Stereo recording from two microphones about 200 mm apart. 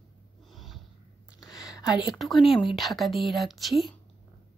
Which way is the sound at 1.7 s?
5° right (ahead or behind).